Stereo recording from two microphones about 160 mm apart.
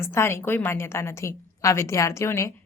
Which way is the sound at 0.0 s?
15° left (ahead or behind).